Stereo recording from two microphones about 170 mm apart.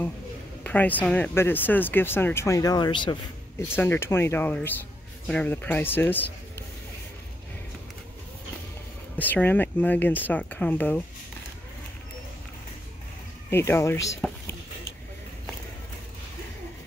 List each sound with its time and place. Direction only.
0.7 s speech: 10° left (ahead or behind); by 3.2 s 25° left (ahead or behind)
3.5 s speech: 15° left (ahead or behind)
9.2 s speech: 10° left (ahead or behind)
13.5 s speech: 15° left (ahead or behind)
14.2 s a sound: 5° left (ahead or behind)